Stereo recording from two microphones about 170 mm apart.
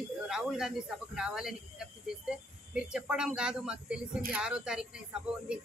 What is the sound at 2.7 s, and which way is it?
Speech, 5° right (ahead or behind).